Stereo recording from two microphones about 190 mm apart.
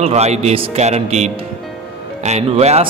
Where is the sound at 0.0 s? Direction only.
35° right (ahead or behind).